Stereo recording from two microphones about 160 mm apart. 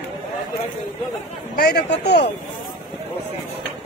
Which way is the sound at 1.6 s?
90° left.